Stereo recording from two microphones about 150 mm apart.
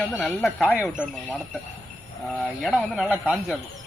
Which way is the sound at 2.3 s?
10° left (ahead or behind).